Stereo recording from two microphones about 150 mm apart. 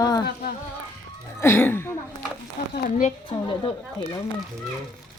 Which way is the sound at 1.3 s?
15° left (ahead or behind).